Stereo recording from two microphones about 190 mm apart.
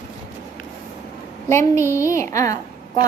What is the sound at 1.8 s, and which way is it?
Speech, 15° left (ahead or behind).